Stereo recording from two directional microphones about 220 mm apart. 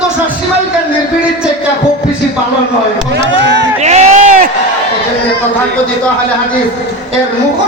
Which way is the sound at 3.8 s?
30° right (ahead or behind).